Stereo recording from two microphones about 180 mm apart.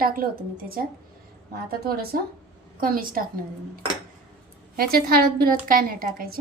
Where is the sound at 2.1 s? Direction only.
55° right (ahead or behind).